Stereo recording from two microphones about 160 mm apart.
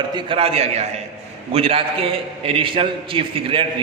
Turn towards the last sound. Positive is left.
turn(degrees=-35)  # may be behind; listen again after turning